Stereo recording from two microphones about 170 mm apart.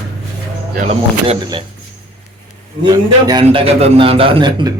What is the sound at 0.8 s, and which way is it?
Speech, 35° right (ahead or behind).